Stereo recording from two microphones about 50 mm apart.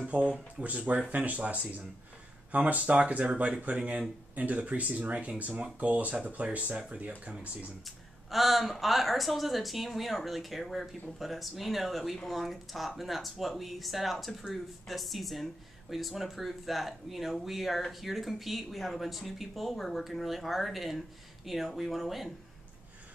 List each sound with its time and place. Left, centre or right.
0.1 s speech: centre
7.3 s speech: centre